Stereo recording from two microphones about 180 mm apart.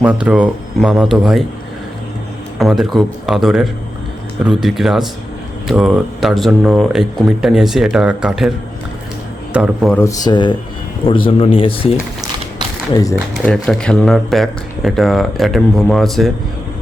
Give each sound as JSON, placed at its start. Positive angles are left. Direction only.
{"t": 0.0, "sound": "speech", "side_deg": -5}
{"t": 2.6, "sound": "speech", "side_deg": 0}
{"t": 10.0, "sound": "speech", "side_deg": 20}
{"t": 12.9, "sound": "speech", "side_deg": 20}
{"t": 13.4, "sound": "speech", "side_deg": 5}